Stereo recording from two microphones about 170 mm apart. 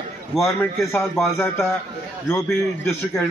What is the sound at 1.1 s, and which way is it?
Speech, centre (ahead or behind).